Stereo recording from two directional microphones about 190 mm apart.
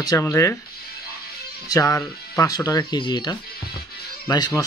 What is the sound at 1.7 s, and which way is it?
Speech, 15° left (ahead or behind).